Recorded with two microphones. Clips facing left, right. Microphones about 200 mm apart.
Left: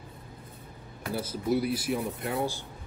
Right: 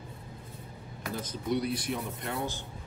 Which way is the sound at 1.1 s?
10° left (ahead or behind).